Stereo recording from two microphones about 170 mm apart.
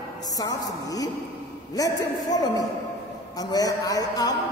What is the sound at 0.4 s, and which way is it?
A woman's voice, 20° left (ahead or behind).